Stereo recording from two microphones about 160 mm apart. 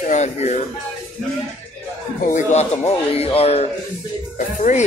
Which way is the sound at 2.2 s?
50° left (ahead or behind).